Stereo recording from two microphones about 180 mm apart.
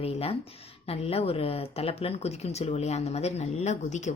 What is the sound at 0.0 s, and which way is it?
Speech, 35° left (ahead or behind).